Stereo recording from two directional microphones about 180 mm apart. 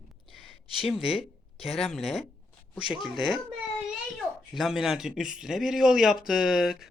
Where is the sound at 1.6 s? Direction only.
Centre (ahead or behind).